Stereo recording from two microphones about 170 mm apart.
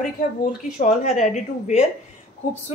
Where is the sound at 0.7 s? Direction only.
45° left (ahead or behind).